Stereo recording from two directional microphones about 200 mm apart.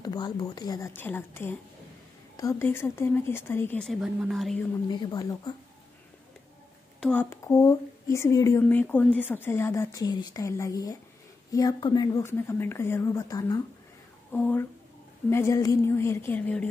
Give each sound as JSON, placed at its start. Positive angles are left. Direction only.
{"t": 0.0, "sound": "a woman's voice", "side_deg": 20}
{"t": 4.8, "sound": "speech", "side_deg": 20}
{"t": 7.0, "sound": "a woman's voice", "side_deg": 5}